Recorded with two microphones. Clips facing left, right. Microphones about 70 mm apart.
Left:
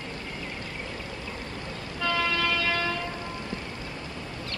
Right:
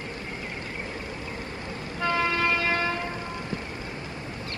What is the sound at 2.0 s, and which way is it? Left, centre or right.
Train, right.